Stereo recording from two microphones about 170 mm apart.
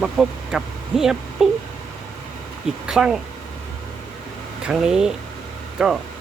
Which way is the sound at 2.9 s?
Centre (ahead or behind).